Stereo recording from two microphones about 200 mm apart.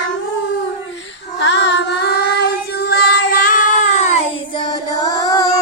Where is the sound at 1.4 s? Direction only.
60° left (ahead or behind); by 4.6 s 35° left (ahead or behind).